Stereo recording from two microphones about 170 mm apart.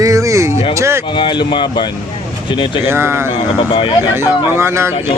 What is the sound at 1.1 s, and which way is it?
Speech, 30° left (ahead or behind).